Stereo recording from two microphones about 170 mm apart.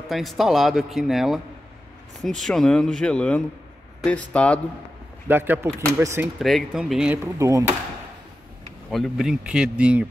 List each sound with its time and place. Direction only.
0.1 s speech: centre (ahead or behind)
5.3 s speech: 10° right (ahead or behind)
6.2 s speech: centre (ahead or behind)
7.3 s speech: 20° right (ahead or behind)
8.9 s speech: centre (ahead or behind)